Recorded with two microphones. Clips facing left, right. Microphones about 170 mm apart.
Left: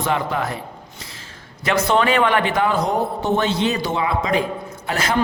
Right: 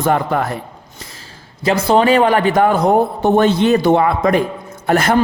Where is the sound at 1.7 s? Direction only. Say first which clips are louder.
Right 5 dB; 35° right (ahead or behind).